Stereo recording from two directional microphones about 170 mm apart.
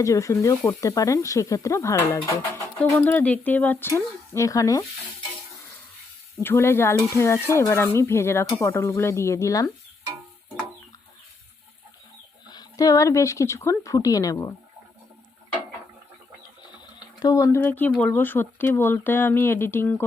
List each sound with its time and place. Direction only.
0.0 s speech: 20° left (ahead or behind)
6.4 s speech: 15° left (ahead or behind)
12.5 s speech: 20° left (ahead or behind)
16.6 s speech: 25° left (ahead or behind)